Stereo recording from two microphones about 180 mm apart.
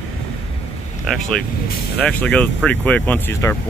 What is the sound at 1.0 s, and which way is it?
Speech, centre (ahead or behind).